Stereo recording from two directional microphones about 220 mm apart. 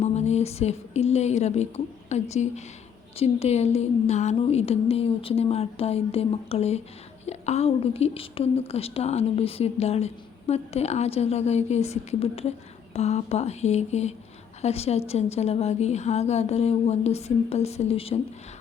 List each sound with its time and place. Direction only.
0.0 s a woman's voice: 30° left (ahead or behind)